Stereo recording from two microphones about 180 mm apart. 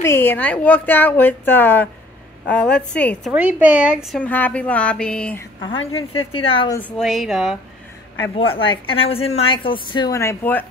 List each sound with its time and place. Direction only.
0.0 s a woman's voice: 10° left (ahead or behind)
3.3 s a woman's voice: 10° right (ahead or behind)
5.7 s a woman's voice: 90° left
6.3 s a woman's voice: 30° left (ahead or behind)
7.0 s a woman's voice: centre (ahead or behind)
8.6 s a woman's voice: 30° left (ahead or behind); by 10.7 s 10° left (ahead or behind)